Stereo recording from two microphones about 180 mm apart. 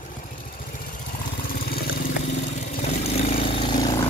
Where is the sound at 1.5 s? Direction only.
55° left (ahead or behind).